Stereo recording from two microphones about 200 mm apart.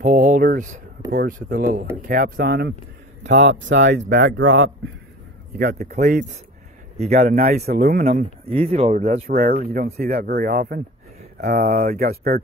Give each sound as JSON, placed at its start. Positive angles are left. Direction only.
{"t": 0.0, "sound": "speech", "side_deg": -40}
{"t": 3.3, "sound": "speech", "side_deg": -65}
{"t": 5.6, "sound": "speech", "side_deg": -55}
{"t": 5.9, "sound": "speech", "side_deg": -40}
{"t": 8.1, "sound": "speech", "side_deg": -30}
{"t": 9.3, "sound": "speech", "side_deg": -45}